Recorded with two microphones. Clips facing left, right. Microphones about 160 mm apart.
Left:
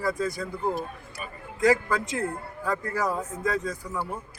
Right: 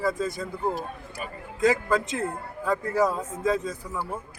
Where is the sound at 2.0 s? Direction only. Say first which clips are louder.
Even; 20° right (ahead or behind).